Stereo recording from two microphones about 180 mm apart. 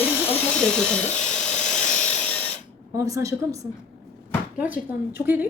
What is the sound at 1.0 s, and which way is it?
Speech, 40° left (ahead or behind).